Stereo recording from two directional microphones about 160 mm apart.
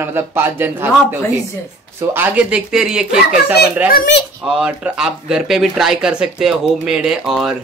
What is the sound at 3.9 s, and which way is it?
Speech, 75° left (ahead or behind).